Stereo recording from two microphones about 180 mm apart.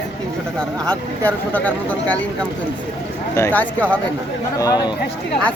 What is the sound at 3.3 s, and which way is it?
Speech, 10° left (ahead or behind).